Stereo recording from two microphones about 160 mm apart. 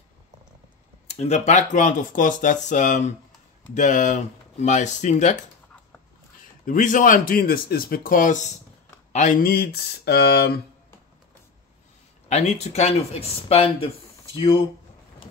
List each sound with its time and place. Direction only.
1.0 s speech: 40° left (ahead or behind)
6.6 s speech: 55° left (ahead or behind); by 10.6 s 80° left
12.3 s speech: 45° left (ahead or behind)